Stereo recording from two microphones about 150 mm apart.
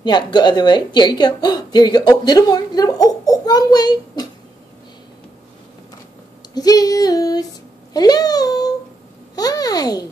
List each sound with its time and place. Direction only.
0.0 s a woman's voice: 30° left (ahead or behind)
6.5 s a woman's voice: 25° left (ahead or behind)
9.3 s a sound: 25° left (ahead or behind)